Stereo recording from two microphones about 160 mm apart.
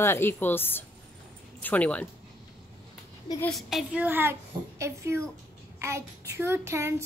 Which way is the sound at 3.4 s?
Centre (ahead or behind).